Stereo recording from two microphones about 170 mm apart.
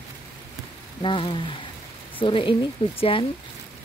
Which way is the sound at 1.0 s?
30° left (ahead or behind).